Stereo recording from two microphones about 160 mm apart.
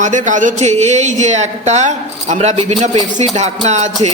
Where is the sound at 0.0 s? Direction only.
50° right (ahead or behind).